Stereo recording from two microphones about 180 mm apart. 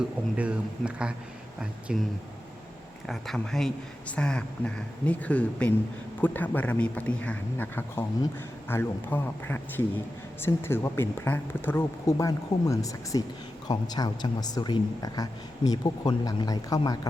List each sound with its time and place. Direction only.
0.3 s speech: 5° right (ahead or behind)
3.1 s speech: centre (ahead or behind); by 17.1 s 20° left (ahead or behind)